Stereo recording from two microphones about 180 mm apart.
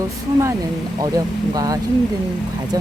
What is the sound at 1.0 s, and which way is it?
Speech, 20° right (ahead or behind).